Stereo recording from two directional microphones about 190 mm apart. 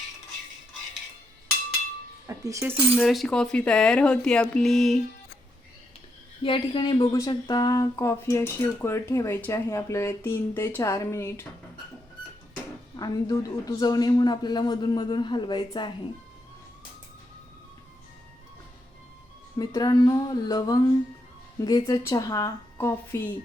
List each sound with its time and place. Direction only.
2.2 s speech: 15° right (ahead or behind)
2.9 s speech: centre (ahead or behind)
6.4 s speech: 25° left (ahead or behind)
13.0 s a man's voice: 20° left (ahead or behind)
19.5 s a man's voice: 20° left (ahead or behind)